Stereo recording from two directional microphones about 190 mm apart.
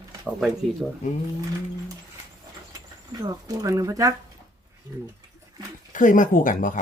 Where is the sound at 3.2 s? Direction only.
20° right (ahead or behind).